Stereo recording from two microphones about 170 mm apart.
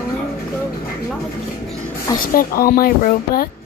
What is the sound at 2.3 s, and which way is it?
Speech, 60° left (ahead or behind).